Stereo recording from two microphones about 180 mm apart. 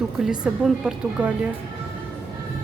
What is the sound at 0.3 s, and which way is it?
A woman's voice, 5° right (ahead or behind).